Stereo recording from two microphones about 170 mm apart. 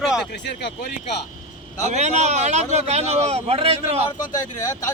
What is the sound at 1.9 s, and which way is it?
A man's voice, 40° right (ahead or behind).